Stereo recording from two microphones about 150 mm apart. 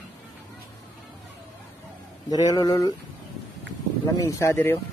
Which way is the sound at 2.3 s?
25° left (ahead or behind).